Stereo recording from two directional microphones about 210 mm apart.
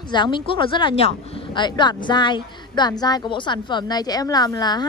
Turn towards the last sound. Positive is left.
turn(degrees=20)  # may be behind; listen again after turning